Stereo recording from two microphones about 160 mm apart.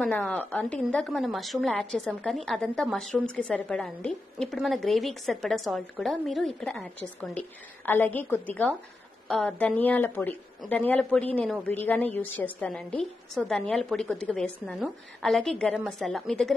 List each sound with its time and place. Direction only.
0.0 s a woman's voice: 5° left (ahead or behind)